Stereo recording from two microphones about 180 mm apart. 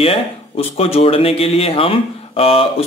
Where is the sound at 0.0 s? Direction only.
30° left (ahead or behind).